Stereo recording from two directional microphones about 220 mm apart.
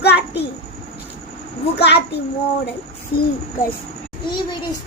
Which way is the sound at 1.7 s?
50° left (ahead or behind).